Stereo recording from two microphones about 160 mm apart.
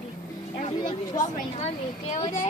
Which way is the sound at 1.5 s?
45° left (ahead or behind).